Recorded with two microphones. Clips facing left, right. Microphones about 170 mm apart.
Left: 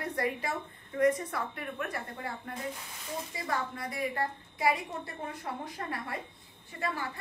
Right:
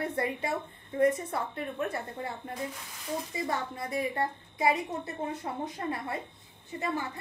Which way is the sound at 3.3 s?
20° right (ahead or behind).